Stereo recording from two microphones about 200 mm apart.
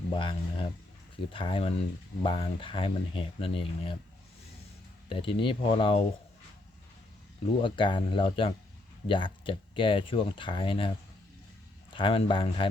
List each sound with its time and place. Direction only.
0.1 s speech: 25° left (ahead or behind)
5.0 s speech: 25° left (ahead or behind)
7.4 s speech: 25° left (ahead or behind)
11.9 s speech: 25° left (ahead or behind)